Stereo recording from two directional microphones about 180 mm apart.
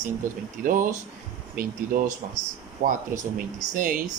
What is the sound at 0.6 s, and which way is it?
Speech, 50° right (ahead or behind).